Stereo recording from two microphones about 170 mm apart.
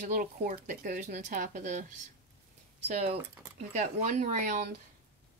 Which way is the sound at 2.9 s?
45° right (ahead or behind).